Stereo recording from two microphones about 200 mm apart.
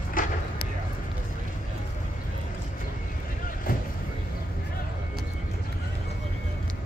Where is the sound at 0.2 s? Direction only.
45° left (ahead or behind).